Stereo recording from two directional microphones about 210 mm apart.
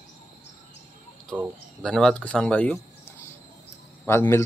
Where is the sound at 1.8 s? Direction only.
5° left (ahead or behind).